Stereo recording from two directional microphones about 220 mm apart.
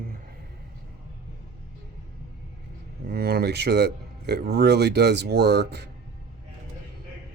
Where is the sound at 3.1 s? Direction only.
45° right (ahead or behind).